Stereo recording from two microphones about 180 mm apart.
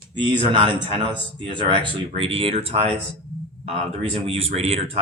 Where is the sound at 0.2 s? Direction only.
25° right (ahead or behind).